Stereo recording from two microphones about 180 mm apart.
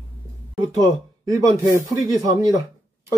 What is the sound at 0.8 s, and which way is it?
Speech, 20° right (ahead or behind).